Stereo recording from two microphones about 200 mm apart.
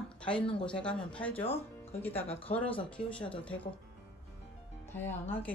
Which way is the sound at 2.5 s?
35° left (ahead or behind).